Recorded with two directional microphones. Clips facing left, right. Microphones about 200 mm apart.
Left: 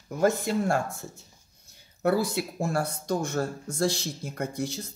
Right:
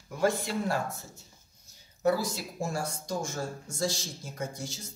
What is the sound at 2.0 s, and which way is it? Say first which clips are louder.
Speech: left 3 dB; 60° left (ahead or behind).